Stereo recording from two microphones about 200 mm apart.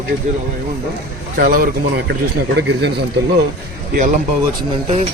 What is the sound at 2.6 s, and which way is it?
Speech, 60° right (ahead or behind).